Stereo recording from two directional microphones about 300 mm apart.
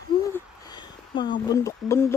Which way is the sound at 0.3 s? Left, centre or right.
Centre.